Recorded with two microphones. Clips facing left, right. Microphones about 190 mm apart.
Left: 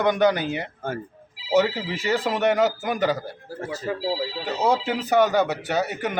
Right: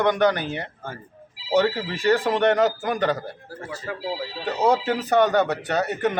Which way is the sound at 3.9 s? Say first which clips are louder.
Left 4 dB; 25° left (ahead or behind).